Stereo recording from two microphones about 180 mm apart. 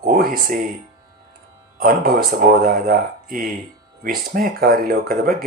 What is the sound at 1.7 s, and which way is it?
Speech, 55° right (ahead or behind).